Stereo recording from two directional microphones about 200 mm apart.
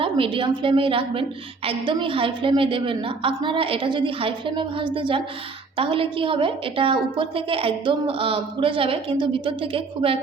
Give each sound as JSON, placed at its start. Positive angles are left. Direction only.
{"t": 0.0, "sound": "a woman's voice", "side_deg": -25}